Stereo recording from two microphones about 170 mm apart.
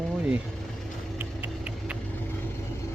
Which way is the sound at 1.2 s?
10° right (ahead or behind).